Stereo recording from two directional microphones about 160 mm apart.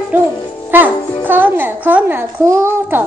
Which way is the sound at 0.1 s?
10° right (ahead or behind).